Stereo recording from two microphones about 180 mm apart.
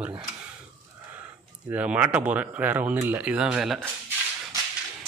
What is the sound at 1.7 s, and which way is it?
Speech, 10° right (ahead or behind).